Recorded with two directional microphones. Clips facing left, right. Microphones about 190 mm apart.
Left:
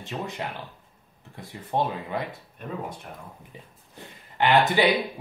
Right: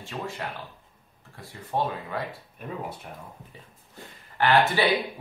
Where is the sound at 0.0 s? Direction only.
20° left (ahead or behind).